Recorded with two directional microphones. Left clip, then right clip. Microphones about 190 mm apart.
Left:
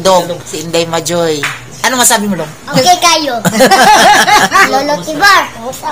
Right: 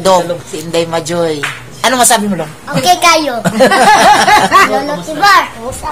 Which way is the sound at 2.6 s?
15° right (ahead or behind).